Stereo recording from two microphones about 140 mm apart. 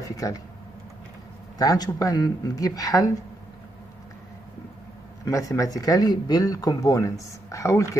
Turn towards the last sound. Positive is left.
turn(degrees=20)  # may be behind; listen again after turning